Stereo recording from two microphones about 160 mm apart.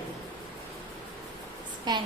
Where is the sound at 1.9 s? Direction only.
30° right (ahead or behind).